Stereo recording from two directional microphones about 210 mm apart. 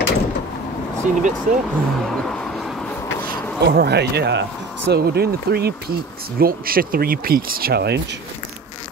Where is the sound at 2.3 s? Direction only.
5° left (ahead or behind).